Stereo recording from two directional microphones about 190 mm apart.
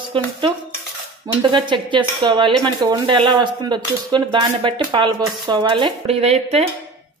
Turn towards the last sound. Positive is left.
turn(degrees=-35)  # may be behind; listen again after turning